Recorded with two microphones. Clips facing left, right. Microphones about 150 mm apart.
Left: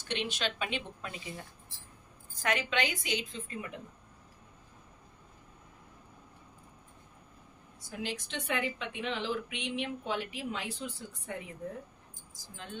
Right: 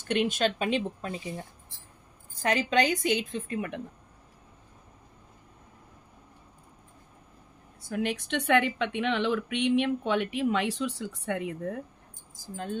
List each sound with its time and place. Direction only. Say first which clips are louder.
0.1 s a woman's voice: right 9 dB; 50° right (ahead or behind); by 3.8 s 65° right (ahead or behind)
7.9 s speech: right 8 dB; 60° right (ahead or behind)
12.5 s a woman's voice: right 10 dB; 45° right (ahead or behind)